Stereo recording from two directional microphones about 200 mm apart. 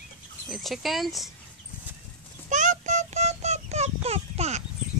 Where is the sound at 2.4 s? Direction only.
40° right (ahead or behind).